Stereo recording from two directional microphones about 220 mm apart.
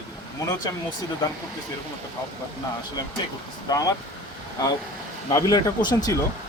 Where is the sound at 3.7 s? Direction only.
15° left (ahead or behind).